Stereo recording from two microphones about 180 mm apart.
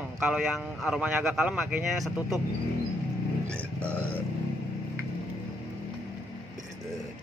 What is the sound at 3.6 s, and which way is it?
Speech, 5° left (ahead or behind).